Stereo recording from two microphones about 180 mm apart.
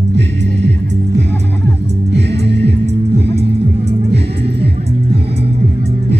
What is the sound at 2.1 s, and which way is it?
Music, 70° right (ahead or behind).